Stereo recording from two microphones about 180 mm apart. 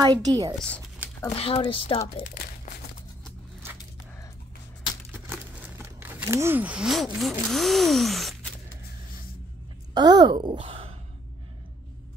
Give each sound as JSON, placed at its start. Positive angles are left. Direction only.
{"t": 0.0, "sound": "a woman's voice", "side_deg": -20}
{"t": 1.3, "sound": "speech", "side_deg": 30}
{"t": 5.3, "sound": "a sound", "side_deg": -10}
{"t": 7.2, "sound": "speech", "side_deg": 0}
{"t": 9.9, "sound": "speech", "side_deg": -25}